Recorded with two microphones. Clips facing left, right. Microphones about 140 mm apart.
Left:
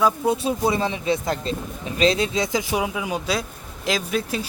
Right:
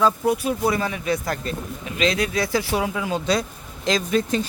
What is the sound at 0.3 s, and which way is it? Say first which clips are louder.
Speech: even; 25° left (ahead or behind).